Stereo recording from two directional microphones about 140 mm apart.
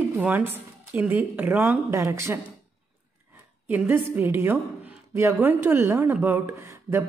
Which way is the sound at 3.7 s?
15° right (ahead or behind).